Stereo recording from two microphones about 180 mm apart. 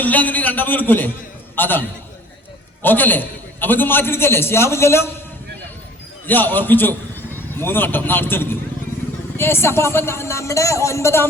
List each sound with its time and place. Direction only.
0.0 s a man's voice: 10° left (ahead or behind)
2.8 s a man's voice: 10° left (ahead or behind)
6.2 s a man's voice: 10° left (ahead or behind)